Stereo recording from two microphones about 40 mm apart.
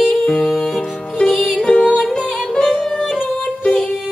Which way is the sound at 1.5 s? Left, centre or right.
Left.